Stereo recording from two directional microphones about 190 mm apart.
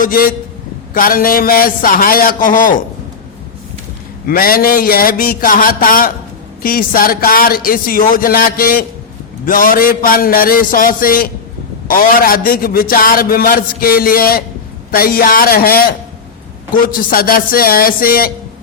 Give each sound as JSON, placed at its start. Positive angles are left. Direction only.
{"t": 0.0, "sound": "a man's voice", "side_deg": 50}
{"t": 4.3, "sound": "a man's voice", "side_deg": 50}